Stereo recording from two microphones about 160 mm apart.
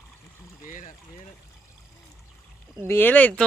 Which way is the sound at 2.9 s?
10° left (ahead or behind).